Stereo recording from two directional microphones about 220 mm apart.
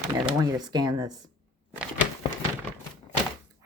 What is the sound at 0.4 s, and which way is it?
Speech, 15° right (ahead or behind).